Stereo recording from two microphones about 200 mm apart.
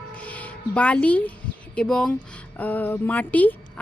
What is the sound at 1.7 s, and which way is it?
A woman's voice, 5° left (ahead or behind).